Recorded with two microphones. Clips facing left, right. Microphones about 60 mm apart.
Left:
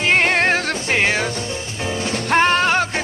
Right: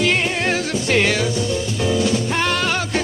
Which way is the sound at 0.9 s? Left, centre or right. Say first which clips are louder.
Right 1 dB; left.